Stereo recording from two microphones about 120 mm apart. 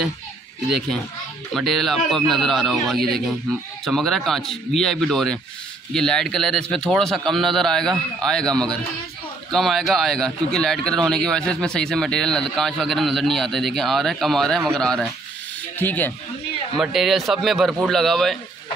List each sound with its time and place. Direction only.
1.5 s a man's voice: centre (ahead or behind)
15.8 s speech: 15° left (ahead or behind)
16.8 s a man's voice: centre (ahead or behind)